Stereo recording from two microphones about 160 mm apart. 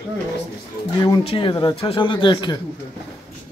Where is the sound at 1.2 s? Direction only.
30° left (ahead or behind).